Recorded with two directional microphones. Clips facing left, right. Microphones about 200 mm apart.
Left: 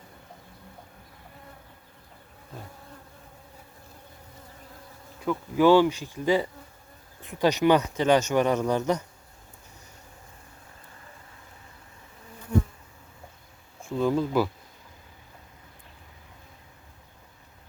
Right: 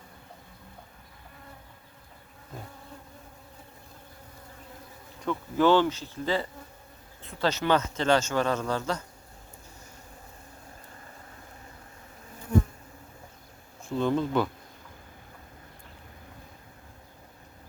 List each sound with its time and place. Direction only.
5.2 s speech: 10° left (ahead or behind)
13.8 s speech: 5° left (ahead or behind)